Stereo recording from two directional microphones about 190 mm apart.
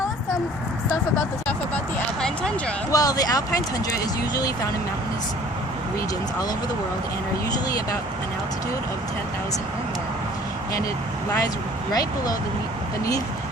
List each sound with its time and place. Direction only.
2.9 s speech: 20° left (ahead or behind)
11.3 s speech: 20° left (ahead or behind)